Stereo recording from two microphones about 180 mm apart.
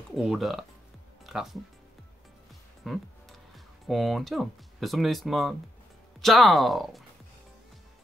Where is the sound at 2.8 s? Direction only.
Centre (ahead or behind).